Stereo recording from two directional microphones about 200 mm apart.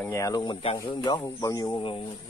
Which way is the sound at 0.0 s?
15° left (ahead or behind).